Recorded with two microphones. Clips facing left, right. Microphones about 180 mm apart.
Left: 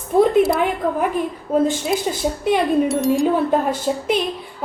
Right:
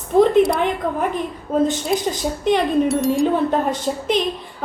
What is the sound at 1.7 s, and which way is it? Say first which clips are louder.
Speech: even; 10° left (ahead or behind).